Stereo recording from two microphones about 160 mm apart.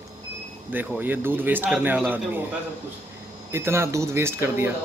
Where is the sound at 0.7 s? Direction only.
10° right (ahead or behind).